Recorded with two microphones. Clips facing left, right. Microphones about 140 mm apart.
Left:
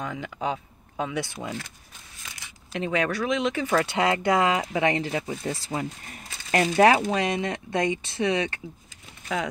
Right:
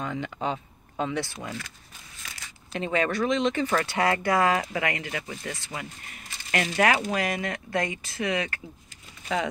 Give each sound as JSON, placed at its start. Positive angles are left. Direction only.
{"t": 0.0, "sound": "speech", "side_deg": 0}
{"t": 1.2, "sound": "speech", "side_deg": 15}
{"t": 2.7, "sound": "speech", "side_deg": 0}